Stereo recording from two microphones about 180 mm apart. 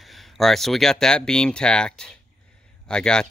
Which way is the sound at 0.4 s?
Centre (ahead or behind).